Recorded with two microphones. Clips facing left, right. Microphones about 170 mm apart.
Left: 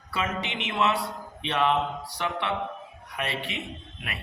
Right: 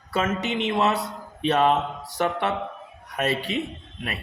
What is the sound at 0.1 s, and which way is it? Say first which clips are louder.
Speech: right 6 dB; 40° right (ahead or behind).